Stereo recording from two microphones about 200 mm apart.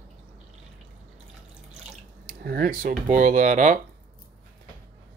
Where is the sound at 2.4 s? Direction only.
50° right (ahead or behind).